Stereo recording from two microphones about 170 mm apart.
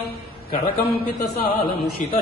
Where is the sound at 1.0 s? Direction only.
60° left (ahead or behind).